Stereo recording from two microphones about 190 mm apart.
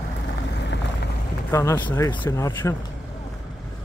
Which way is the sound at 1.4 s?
15° left (ahead or behind).